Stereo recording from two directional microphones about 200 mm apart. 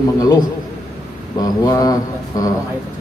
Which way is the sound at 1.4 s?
20° left (ahead or behind).